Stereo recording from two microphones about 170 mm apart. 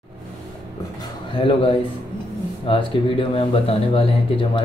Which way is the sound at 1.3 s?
30° left (ahead or behind).